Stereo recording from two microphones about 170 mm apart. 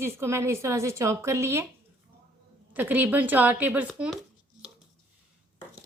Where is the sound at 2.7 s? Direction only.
10° right (ahead or behind).